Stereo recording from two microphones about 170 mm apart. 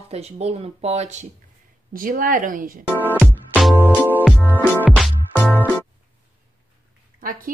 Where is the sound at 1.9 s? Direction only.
55° right (ahead or behind).